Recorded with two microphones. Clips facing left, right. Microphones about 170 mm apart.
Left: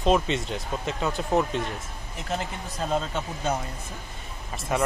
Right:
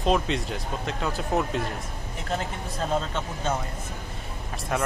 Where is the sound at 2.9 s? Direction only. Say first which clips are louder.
Even; 10° left (ahead or behind).